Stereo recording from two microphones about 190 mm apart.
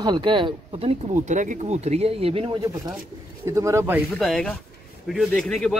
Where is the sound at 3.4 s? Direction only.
15° right (ahead or behind).